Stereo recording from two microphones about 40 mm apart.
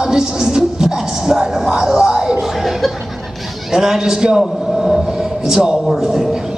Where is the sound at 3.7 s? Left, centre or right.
Centre.